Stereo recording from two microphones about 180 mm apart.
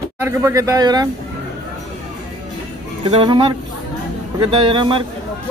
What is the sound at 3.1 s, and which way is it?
A man's voice, 30° right (ahead or behind).